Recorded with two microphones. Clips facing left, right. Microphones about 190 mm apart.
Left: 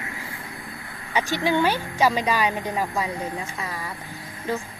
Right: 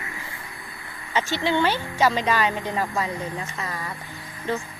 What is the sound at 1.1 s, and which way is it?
Speech, 15° left (ahead or behind).